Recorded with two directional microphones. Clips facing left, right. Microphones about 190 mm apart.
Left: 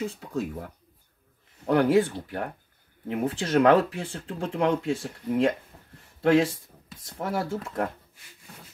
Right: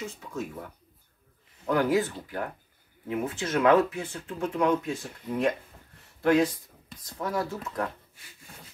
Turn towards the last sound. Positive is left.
turn(degrees=30)  # may be behind; listen again after turning